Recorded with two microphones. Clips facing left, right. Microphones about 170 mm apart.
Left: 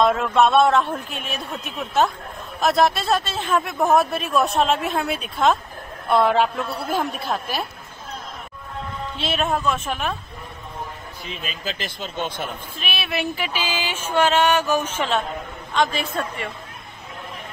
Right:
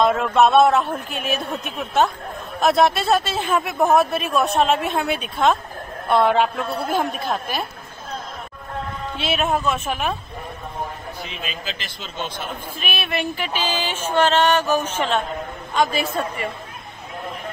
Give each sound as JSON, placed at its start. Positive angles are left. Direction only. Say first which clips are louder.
{"t": 0.0, "sound": "speech", "louder": "right 1 dB", "side_deg": 0}
{"t": 9.2, "sound": "speech", "louder": "right 1 dB", "side_deg": -5}
{"t": 11.6, "sound": "speech", "louder": "left 3 dB", "side_deg": 50}
{"t": 12.8, "sound": "speech", "louder": "right 1 dB", "side_deg": 0}
{"t": 15.7, "sound": "speech", "louder": "right 1 dB", "side_deg": -5}